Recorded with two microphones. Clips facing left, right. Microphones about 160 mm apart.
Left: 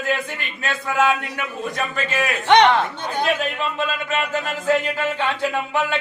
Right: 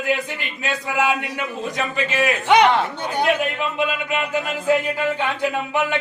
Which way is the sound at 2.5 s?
5° right (ahead or behind).